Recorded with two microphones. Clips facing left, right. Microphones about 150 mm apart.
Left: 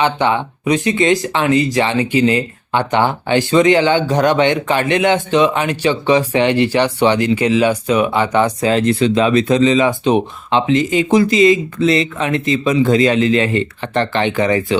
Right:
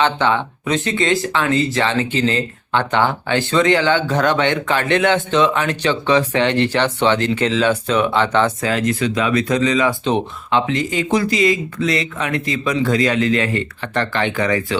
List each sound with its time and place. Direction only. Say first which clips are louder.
0.0 s speech: left 1 dB; 15° left (ahead or behind)